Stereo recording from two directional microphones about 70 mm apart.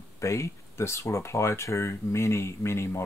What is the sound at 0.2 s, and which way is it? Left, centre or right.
Speech, left.